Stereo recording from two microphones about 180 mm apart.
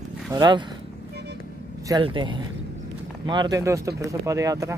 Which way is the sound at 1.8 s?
25° right (ahead or behind).